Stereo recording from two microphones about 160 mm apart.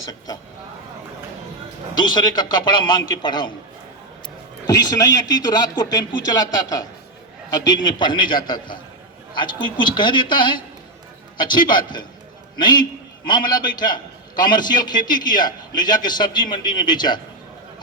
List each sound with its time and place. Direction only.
2.0 s a man's voice: 25° left (ahead or behind)
4.6 s a man's voice: 25° left (ahead or behind)